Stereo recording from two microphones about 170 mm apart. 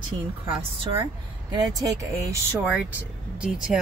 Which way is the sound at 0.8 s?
30° right (ahead or behind).